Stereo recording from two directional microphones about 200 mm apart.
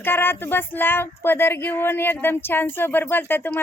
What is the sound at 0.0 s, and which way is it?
Speech, 10° left (ahead or behind).